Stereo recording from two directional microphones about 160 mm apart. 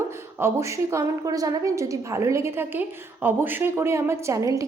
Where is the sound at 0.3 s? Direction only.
15° right (ahead or behind).